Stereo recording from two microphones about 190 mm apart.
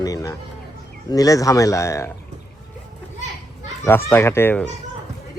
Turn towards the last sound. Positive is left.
turn(degrees=10)  # may be behind; listen again after turning